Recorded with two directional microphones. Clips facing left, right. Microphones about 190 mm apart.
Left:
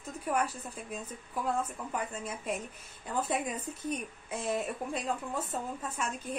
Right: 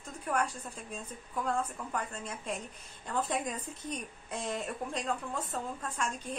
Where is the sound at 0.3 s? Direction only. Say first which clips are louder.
Left 1 dB; 5° left (ahead or behind).